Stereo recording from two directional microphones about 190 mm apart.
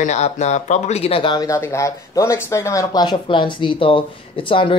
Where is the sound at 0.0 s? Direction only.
35° left (ahead or behind).